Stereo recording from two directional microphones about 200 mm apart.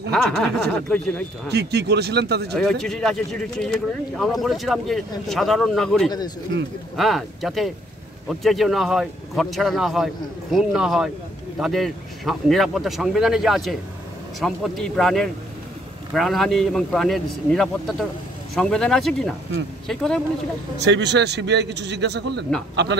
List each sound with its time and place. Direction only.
0.1 s speech: 5° left (ahead or behind)
1.5 s a man's voice: 55° right (ahead or behind)
2.5 s speech: 5° left (ahead or behind)
20.8 s a man's voice: 60° right (ahead or behind)